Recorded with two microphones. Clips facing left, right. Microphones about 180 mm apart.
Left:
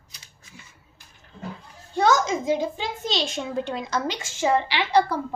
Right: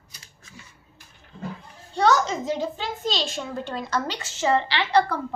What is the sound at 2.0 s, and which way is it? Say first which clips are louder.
A woman's voice: even; 10° left (ahead or behind).